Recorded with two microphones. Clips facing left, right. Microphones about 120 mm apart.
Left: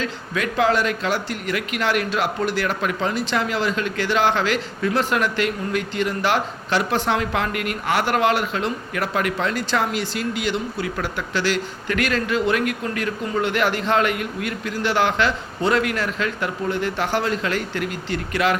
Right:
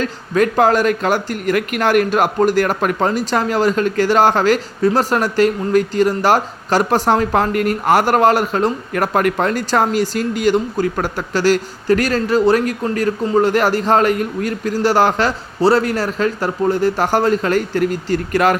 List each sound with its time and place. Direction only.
0.0 s speech: 45° right (ahead or behind)